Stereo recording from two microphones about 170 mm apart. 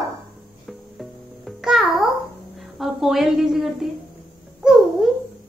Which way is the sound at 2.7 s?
Centre (ahead or behind).